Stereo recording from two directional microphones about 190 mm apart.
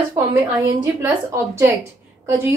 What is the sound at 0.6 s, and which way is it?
A woman's voice, 15° right (ahead or behind).